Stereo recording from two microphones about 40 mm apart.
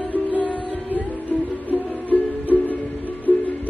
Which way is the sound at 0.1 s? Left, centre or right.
Left.